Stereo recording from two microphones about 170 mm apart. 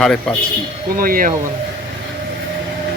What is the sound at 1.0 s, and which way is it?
Speech, 55° right (ahead or behind).